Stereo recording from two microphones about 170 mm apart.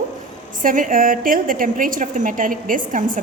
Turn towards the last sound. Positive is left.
turn(degrees=-50)  # may be behind; listen again after turning